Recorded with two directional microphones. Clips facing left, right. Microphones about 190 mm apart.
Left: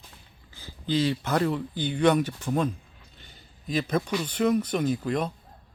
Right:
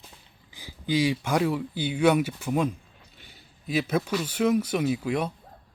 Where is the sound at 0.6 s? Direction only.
10° right (ahead or behind).